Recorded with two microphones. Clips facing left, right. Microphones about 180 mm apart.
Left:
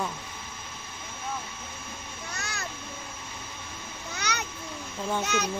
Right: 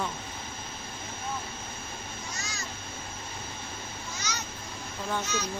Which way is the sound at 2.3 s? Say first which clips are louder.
Left 2 dB; 60° left (ahead or behind).